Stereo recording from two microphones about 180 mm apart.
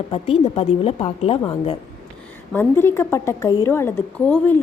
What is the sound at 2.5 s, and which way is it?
A woman's voice, 10° left (ahead or behind).